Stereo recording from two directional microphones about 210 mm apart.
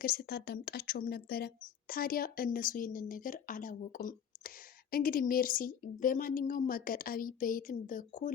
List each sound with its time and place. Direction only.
0.0 s speech: 45° left (ahead or behind)